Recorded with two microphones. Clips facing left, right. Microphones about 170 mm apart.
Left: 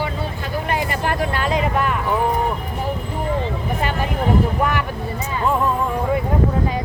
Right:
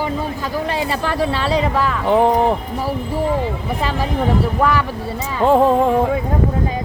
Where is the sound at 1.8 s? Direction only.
85° right.